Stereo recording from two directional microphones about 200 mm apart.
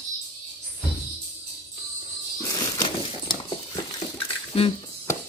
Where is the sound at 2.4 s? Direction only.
20° left (ahead or behind).